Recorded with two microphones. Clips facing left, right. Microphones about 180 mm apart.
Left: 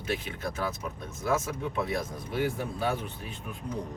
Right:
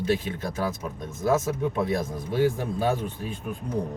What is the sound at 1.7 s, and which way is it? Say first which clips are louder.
Speech: right 5 dB; 40° right (ahead or behind).